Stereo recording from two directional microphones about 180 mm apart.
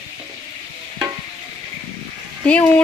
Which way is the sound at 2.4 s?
5° left (ahead or behind).